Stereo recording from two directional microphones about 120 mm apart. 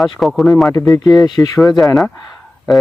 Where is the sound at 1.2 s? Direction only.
30° left (ahead or behind).